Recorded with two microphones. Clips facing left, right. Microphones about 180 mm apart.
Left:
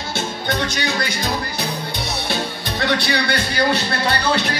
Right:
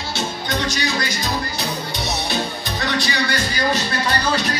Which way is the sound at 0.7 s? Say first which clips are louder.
Even; 55° left (ahead or behind).